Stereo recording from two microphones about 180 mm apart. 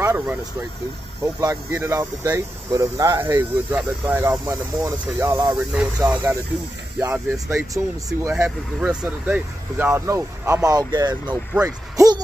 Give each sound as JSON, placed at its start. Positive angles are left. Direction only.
{"t": 0.0, "sound": "vehicle", "side_deg": -15}
{"t": 1.2, "sound": "speech", "side_deg": -15}